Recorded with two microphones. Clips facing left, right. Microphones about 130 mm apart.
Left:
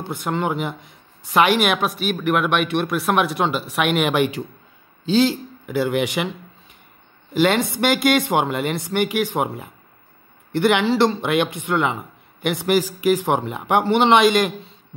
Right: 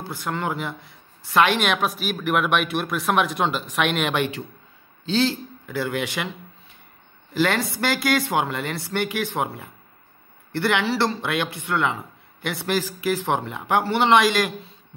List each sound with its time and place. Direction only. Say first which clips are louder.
0.0 s a man's voice: left 4 dB; 20° left (ahead or behind)
7.3 s a man's voice: left 4 dB; 20° left (ahead or behind)